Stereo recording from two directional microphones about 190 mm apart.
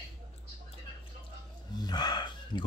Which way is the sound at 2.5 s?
25° left (ahead or behind).